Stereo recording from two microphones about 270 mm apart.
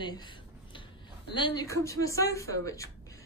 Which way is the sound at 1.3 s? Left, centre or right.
Centre.